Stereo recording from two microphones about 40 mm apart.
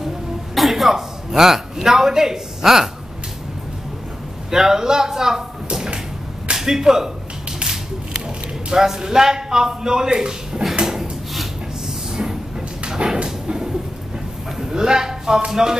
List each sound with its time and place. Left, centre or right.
0.6 s speech: centre
4.5 s a man's voice: centre
8.6 s a man's voice: centre
10.9 s wood: centre
12.2 s vehicle: centre
12.8 s dog: centre
14.6 s a man's voice: centre